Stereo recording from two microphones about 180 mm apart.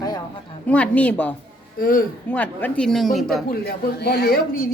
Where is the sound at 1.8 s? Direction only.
50° left (ahead or behind).